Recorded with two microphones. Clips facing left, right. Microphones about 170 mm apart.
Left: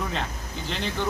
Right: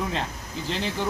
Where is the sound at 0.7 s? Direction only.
5° right (ahead or behind).